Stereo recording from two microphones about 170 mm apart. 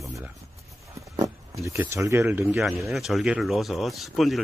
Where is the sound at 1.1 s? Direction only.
20° right (ahead or behind).